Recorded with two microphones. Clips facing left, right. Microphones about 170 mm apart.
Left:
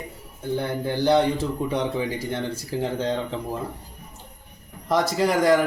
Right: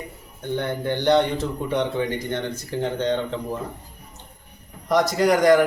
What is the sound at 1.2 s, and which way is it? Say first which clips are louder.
Speech: left 1 dB; 30° left (ahead or behind).